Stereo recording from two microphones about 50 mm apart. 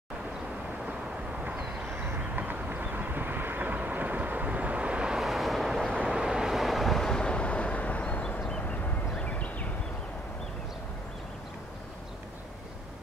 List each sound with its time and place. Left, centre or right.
2.1 s vehicle: right; by 5.2 s centre
5.2 s vehicle: centre
7.1 s vehicle: centre
9.2 s a sound: left